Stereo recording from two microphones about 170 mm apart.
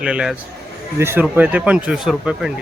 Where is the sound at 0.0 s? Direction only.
5° right (ahead or behind).